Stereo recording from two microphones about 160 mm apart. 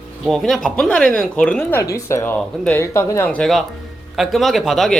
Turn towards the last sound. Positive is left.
turn(degrees=0)  # may be behind; listen again after turning